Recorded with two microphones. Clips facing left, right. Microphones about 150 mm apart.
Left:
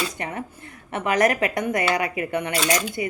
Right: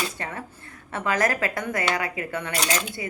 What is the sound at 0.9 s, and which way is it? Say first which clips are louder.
Speech: left 4 dB; 20° left (ahead or behind).